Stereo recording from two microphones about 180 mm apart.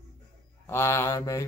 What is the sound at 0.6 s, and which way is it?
Speech, 15° left (ahead or behind).